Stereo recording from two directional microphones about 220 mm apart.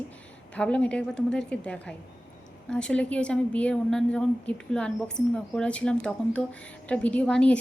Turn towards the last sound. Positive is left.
turn(degrees=5)  # may be behind; listen again after turning